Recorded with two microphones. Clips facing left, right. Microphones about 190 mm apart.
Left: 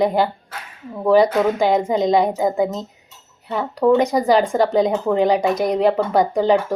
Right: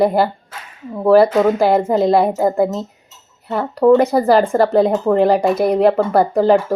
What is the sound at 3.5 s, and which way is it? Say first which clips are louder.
Speech: right 4 dB; 5° right (ahead or behind).